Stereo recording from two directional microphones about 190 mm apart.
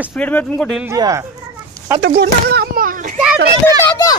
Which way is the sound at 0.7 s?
5° right (ahead or behind).